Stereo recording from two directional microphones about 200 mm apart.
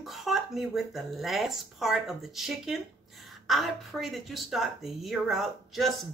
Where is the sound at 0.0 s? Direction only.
Centre (ahead or behind).